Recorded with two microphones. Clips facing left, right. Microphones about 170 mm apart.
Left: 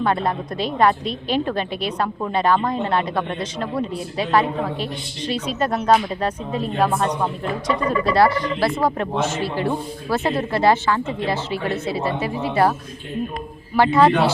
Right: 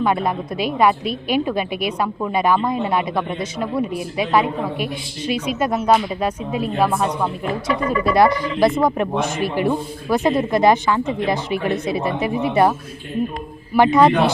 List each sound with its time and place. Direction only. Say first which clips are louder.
0.0 s speech: right 1 dB; 10° right (ahead or behind)
13.7 s speech: right 2 dB; 15° right (ahead or behind)